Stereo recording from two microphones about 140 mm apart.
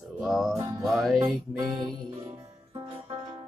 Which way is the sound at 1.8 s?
30° right (ahead or behind).